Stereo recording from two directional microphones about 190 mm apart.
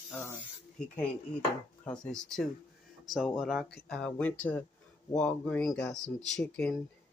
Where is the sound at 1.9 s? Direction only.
Centre (ahead or behind).